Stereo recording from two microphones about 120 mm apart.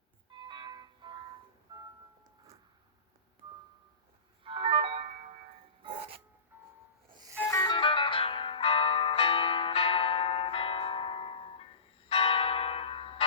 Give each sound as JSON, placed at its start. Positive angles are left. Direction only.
{"t": 0.3, "sound": "music", "side_deg": -40}
{"t": 4.4, "sound": "music", "side_deg": -50}
{"t": 6.5, "sound": "music", "side_deg": -20}
{"t": 7.1, "sound": "music", "side_deg": -35}
{"t": 7.6, "sound": "music", "side_deg": 40}
{"t": 12.0, "sound": "church bell", "side_deg": 50}